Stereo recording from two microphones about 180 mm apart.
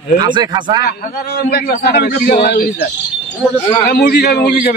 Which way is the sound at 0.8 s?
60° left (ahead or behind).